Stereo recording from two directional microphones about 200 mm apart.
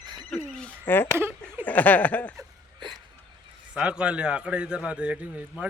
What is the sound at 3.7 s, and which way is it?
A man's voice, 5° right (ahead or behind).